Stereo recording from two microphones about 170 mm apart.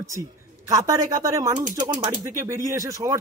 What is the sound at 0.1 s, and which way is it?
Speech, 20° right (ahead or behind).